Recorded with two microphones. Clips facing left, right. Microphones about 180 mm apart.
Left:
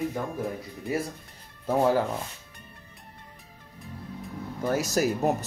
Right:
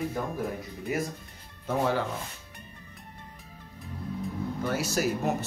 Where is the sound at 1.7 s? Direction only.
40° left (ahead or behind).